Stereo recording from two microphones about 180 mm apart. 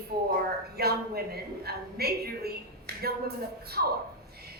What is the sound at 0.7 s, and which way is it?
A woman's voice, 60° right (ahead or behind).